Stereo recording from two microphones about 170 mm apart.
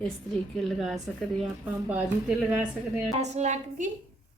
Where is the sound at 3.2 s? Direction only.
40° right (ahead or behind).